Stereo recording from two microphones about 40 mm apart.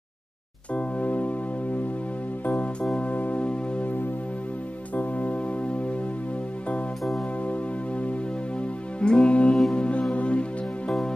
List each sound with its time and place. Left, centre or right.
0.7 s music: left
2.4 s music: left
2.8 s keyboard: left
3.1 s music: left
4.9 s music: left
9.0 s music: left